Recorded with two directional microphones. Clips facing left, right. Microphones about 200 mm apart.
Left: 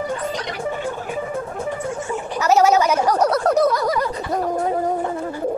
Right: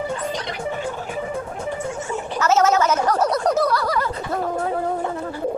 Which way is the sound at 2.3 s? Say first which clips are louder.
Left 2 dB; 15° left (ahead or behind).